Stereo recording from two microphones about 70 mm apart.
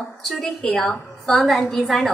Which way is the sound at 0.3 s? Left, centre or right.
Centre.